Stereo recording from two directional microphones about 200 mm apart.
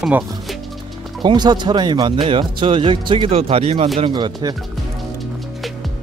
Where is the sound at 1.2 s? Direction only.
20° right (ahead or behind).